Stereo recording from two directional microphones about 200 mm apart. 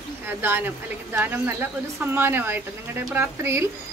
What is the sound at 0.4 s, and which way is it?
Speech, 10° right (ahead or behind).